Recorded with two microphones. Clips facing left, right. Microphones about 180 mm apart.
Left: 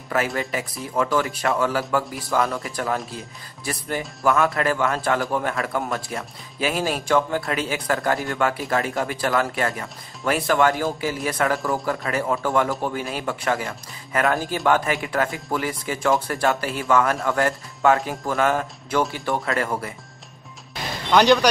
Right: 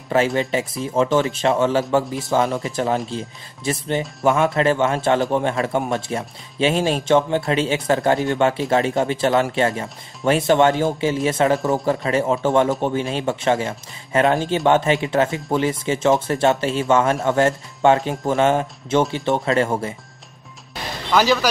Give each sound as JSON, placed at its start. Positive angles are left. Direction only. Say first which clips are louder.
{"t": 0.1, "sound": "a man's voice", "louder": "right 6 dB", "side_deg": -25}
{"t": 21.1, "sound": "speech", "louder": "left 2 dB", "side_deg": -5}